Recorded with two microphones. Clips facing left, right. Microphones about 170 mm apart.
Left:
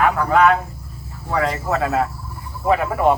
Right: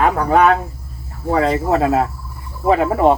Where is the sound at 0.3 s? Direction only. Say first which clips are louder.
Right 2 dB; 25° right (ahead or behind).